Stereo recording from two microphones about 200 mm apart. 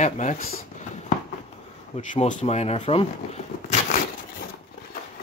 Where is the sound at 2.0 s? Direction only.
40° left (ahead or behind).